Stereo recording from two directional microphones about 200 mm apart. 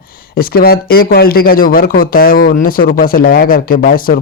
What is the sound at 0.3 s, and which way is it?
Speech, 50° left (ahead or behind).